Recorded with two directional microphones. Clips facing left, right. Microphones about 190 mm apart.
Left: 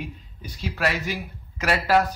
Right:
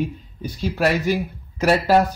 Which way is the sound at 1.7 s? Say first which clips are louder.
Right 4 dB; 30° right (ahead or behind).